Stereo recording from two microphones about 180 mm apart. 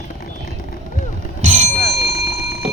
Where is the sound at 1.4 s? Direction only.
40° right (ahead or behind).